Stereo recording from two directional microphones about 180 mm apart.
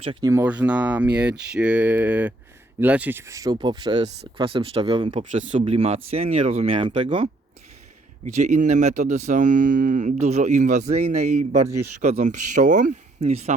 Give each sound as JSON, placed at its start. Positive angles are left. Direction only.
{"t": 0.0, "sound": "speech", "side_deg": -30}
{"t": 0.3, "sound": "speech", "side_deg": -10}
{"t": 5.3, "sound": "speech", "side_deg": -45}
{"t": 8.2, "sound": "speech", "side_deg": -40}